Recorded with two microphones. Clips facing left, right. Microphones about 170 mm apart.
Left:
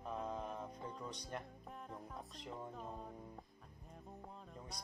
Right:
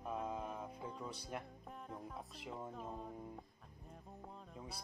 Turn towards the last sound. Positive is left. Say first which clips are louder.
# right 1 dB
turn(degrees=-5)  # may be behind; listen again after turning